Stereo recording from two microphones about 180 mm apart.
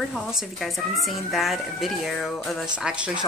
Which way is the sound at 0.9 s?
Centre (ahead or behind).